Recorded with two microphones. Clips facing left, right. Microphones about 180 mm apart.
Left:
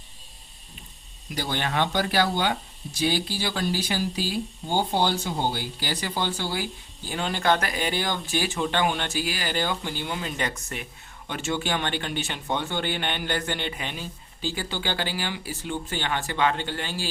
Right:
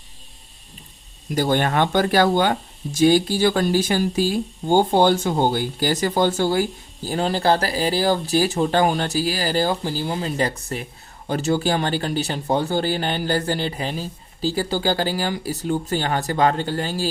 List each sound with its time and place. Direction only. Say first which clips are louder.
1.3 s speech: right 9 dB; 50° right (ahead or behind)